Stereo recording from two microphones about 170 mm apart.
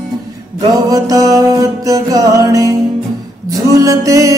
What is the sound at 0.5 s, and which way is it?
Music, 20° right (ahead or behind).